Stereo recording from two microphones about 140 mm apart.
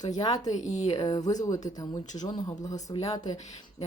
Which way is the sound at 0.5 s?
55° left (ahead or behind).